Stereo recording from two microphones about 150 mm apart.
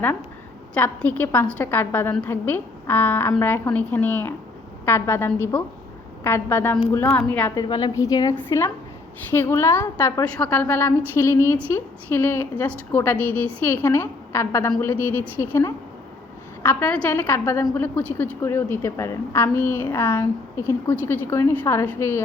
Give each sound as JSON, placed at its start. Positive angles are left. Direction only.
{"t": 0.7, "sound": "a woman's voice", "side_deg": 10}
{"t": 7.5, "sound": "a woman's voice", "side_deg": 25}